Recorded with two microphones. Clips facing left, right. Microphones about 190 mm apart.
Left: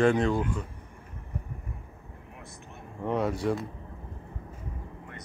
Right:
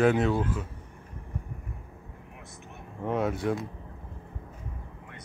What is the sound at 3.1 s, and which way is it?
Speech, centre (ahead or behind).